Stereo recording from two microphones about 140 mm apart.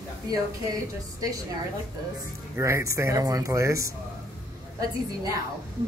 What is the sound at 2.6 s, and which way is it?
Speech, 20° right (ahead or behind).